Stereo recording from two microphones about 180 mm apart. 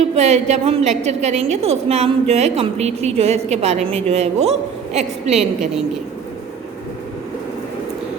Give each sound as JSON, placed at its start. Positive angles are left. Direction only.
{"t": 0.2, "sound": "a woman's voice", "side_deg": -40}